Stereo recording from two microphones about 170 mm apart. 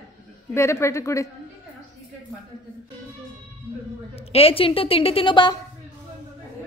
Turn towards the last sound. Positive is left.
turn(degrees=30)  # may be behind; listen again after turning